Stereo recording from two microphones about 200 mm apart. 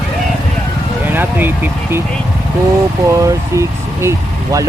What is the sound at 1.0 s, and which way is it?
Speech, 10° right (ahead or behind).